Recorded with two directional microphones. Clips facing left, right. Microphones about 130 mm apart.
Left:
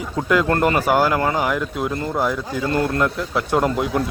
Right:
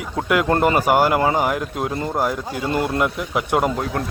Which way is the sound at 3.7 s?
5° left (ahead or behind).